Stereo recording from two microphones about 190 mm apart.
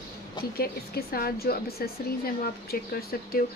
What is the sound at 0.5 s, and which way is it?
Speech, 50° left (ahead or behind).